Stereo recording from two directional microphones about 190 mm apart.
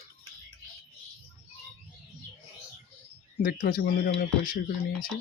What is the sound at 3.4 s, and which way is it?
Speech, 50° left (ahead or behind).